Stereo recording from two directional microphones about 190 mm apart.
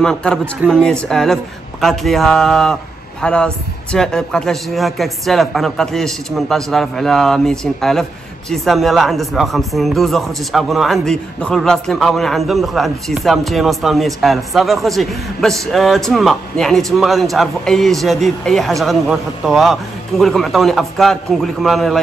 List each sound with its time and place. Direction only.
0.0 s speech: 5° left (ahead or behind)
0.6 s speech: 10° right (ahead or behind)
1.0 s speech: centre (ahead or behind)